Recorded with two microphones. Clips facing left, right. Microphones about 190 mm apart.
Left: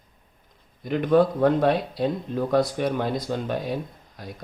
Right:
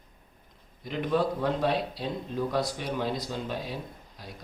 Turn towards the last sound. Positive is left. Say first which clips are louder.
# left 5 dB
turn(degrees=50)  # may be behind; listen again after turning